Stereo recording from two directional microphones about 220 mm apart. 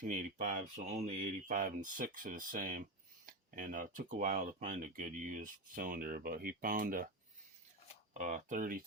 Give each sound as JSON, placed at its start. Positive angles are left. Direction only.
{"t": 0.0, "sound": "speech", "side_deg": -35}
{"t": 8.2, "sound": "speech", "side_deg": -35}